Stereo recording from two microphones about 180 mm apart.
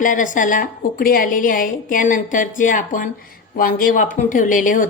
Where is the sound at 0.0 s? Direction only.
45° left (ahead or behind).